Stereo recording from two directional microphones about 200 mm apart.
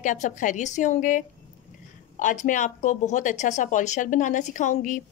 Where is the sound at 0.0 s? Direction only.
40° left (ahead or behind).